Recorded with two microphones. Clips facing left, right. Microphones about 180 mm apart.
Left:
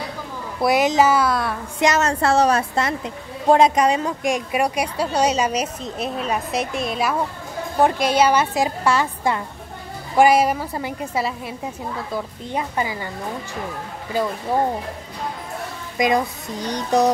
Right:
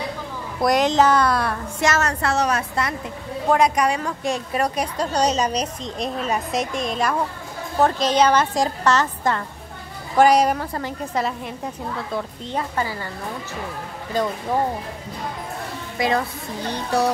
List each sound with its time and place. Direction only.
0.6 s a woman's voice: 5° left (ahead or behind)
1.8 s a woman's voice: 20° left (ahead or behind)
16.0 s a woman's voice: 15° left (ahead or behind)